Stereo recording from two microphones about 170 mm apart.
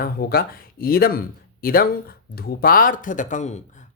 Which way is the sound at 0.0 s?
60° left (ahead or behind).